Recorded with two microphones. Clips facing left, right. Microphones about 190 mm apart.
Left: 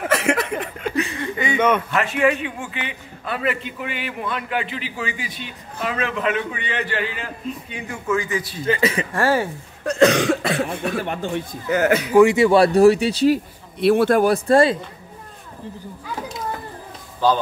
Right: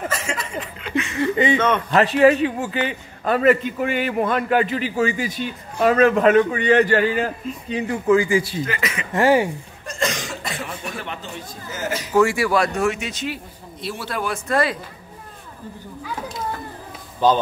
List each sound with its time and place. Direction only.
0.1 s a sound: 60° left (ahead or behind); by 1.1 s 40° left (ahead or behind)
1.2 s a sound: 25° right (ahead or behind)
1.9 s a man's voice: 35° right (ahead or behind)
8.6 s speech: 30° left (ahead or behind)
9.1 s speech: 15° right (ahead or behind)
9.8 s speech: 65° left (ahead or behind)
12.1 s speech: 15° left (ahead or behind); by 13.4 s 35° left (ahead or behind)
13.7 s a man's voice: 60° left (ahead or behind); by 14.8 s 30° left (ahead or behind)
17.2 s speech: 20° right (ahead or behind)